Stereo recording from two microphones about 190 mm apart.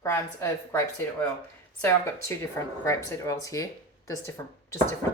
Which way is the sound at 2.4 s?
15° left (ahead or behind).